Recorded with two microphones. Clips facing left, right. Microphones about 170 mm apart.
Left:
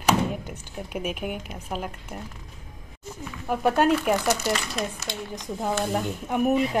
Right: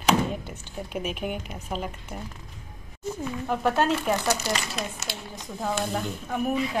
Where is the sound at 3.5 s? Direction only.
10° left (ahead or behind).